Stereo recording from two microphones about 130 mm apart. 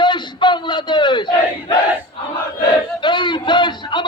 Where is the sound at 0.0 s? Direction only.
35° left (ahead or behind).